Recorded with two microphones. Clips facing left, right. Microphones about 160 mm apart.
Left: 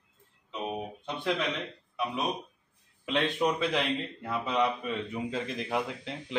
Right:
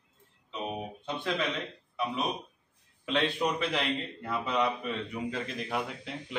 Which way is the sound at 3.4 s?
5° left (ahead or behind).